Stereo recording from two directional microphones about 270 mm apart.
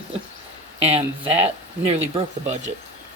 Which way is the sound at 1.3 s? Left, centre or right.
Right.